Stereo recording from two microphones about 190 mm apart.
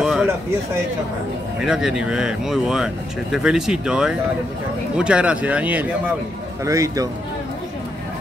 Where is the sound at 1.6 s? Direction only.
5° right (ahead or behind).